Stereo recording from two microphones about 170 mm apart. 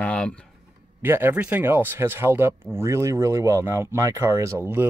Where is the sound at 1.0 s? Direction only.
15° right (ahead or behind).